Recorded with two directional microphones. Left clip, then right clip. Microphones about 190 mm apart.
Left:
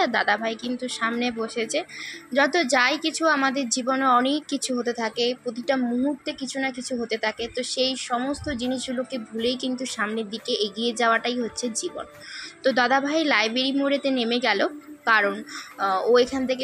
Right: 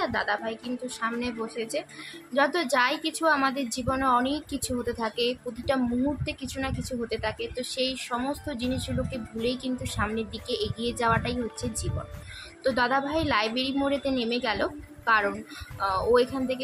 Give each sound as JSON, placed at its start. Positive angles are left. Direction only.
{"t": 0.0, "sound": "a woman's voice", "side_deg": 25}
{"t": 12.6, "sound": "a woman's voice", "side_deg": 20}